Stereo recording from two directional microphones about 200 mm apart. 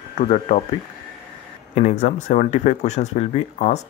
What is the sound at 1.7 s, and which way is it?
Speech, 35° left (ahead or behind).